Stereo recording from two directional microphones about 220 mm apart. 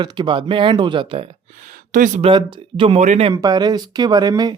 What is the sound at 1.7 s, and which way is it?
Speech, 35° right (ahead or behind).